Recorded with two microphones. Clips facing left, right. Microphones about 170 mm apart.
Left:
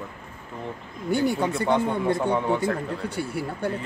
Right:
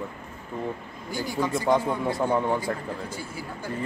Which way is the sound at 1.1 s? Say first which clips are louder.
Left 5 dB; 65° left (ahead or behind).